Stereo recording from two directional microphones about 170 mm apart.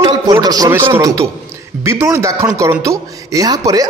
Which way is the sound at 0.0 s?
25° right (ahead or behind).